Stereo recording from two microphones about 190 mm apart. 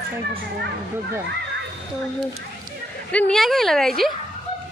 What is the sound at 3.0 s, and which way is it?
A woman's voice, 5° left (ahead or behind).